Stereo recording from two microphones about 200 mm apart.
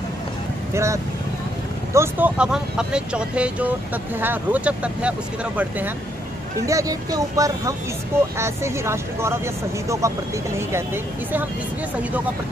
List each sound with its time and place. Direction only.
0.7 s speech: 15° right (ahead or behind)